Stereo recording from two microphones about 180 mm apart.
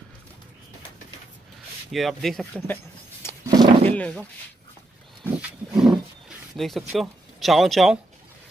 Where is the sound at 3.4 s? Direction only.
25° right (ahead or behind).